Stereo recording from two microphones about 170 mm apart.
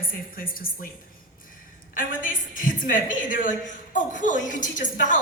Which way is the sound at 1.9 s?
55° left (ahead or behind).